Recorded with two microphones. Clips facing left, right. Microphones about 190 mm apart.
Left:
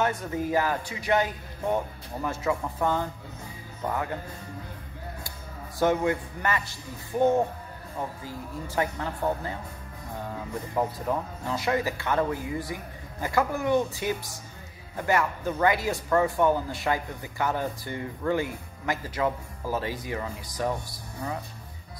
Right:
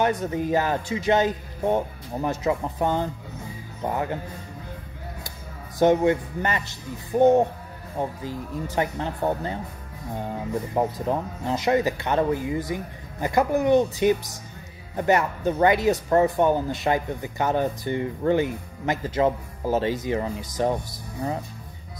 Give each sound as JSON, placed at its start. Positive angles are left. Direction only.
{"t": 0.0, "sound": "speech", "side_deg": -20}
{"t": 5.8, "sound": "speech", "side_deg": -20}